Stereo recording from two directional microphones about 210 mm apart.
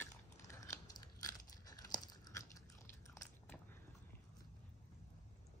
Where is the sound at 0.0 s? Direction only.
15° left (ahead or behind).